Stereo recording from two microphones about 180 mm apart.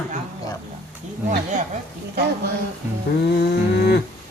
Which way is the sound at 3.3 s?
65° left (ahead or behind).